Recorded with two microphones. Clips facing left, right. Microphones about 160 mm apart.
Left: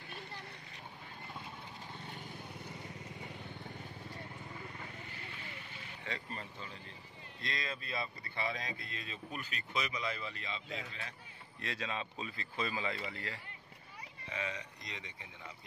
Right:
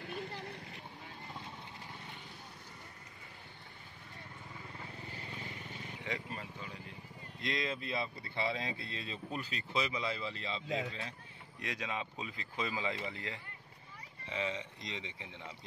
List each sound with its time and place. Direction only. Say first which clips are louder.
5.1 s vehicle: right 3 dB; 35° right (ahead or behind)
6.0 s speech: right 2 dB; 15° right (ahead or behind); by 11.1 s 30° right (ahead or behind)
11.6 s speech: even; 15° right (ahead or behind)